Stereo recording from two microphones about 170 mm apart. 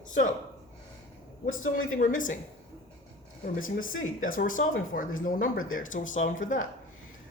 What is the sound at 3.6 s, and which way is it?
Speech, 55° left (ahead or behind).